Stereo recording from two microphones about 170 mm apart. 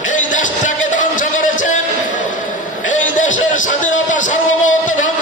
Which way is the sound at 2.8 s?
50° left (ahead or behind).